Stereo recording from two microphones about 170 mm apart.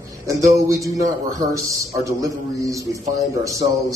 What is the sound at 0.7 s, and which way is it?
A man's voice, 20° right (ahead or behind).